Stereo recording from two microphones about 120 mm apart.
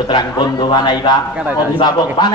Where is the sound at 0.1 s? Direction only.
40° left (ahead or behind).